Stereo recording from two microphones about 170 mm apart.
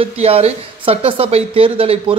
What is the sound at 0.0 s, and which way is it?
Speech, 35° right (ahead or behind).